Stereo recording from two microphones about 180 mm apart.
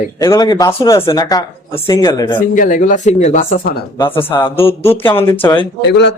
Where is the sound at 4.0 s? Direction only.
30° left (ahead or behind).